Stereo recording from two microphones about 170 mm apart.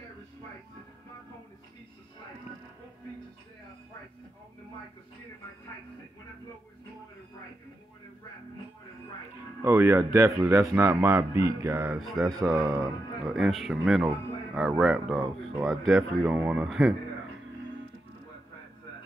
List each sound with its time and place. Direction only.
9.6 s speech: 15° right (ahead or behind)
12.0 s speech: centre (ahead or behind)
12.6 s speech: 20° right (ahead or behind)
13.3 s speech: centre (ahead or behind)